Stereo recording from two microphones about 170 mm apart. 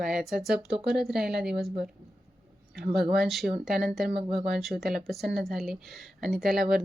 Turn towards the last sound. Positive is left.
turn(degrees=0)  # may be behind; listen again after turning